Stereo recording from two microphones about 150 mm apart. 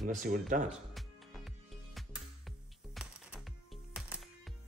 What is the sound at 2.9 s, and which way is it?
Music, 5° right (ahead or behind).